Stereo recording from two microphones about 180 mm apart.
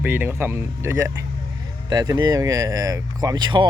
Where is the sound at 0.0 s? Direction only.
10° right (ahead or behind).